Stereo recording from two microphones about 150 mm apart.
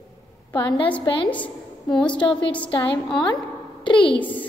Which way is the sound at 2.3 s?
30° left (ahead or behind).